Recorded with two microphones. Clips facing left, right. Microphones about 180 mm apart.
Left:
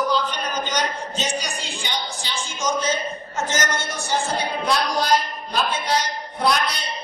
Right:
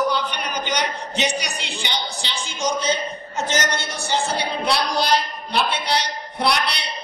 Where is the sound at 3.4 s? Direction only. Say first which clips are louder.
Right 1 dB; 70° right (ahead or behind).